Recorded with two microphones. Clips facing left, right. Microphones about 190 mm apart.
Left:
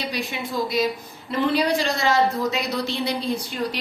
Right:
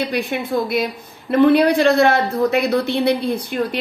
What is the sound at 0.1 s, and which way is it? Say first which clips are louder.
Speech: right 7 dB; 55° right (ahead or behind).